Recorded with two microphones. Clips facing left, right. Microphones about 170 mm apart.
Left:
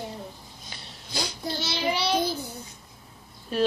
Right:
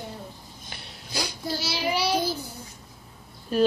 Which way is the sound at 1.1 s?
5° right (ahead or behind).